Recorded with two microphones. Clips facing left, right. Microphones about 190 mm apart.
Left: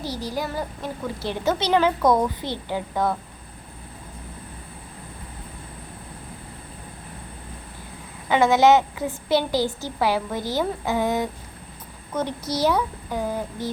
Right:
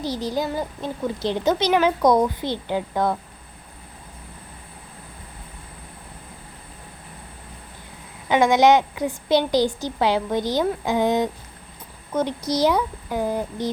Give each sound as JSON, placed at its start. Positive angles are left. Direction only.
{"t": 0.0, "sound": "a woman's voice", "side_deg": -20}
{"t": 8.3, "sound": "a woman's voice", "side_deg": -15}